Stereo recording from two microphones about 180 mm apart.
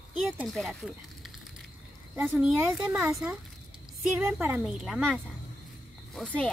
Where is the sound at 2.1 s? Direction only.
10° right (ahead or behind); by 6.5 s 5° left (ahead or behind).